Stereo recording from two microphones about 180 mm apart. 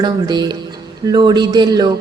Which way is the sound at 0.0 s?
25° right (ahead or behind).